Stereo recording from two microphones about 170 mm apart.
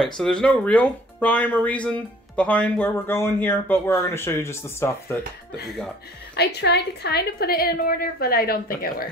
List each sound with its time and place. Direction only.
0.0 s speech: 5° left (ahead or behind)
6.3 s a woman's voice: 75° left (ahead or behind)